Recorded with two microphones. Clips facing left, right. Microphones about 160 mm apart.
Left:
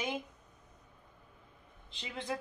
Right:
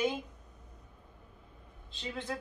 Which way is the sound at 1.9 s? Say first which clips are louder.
Right 3 dB; 15° left (ahead or behind).